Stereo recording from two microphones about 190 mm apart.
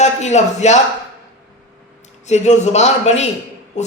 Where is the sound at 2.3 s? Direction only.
35° left (ahead or behind).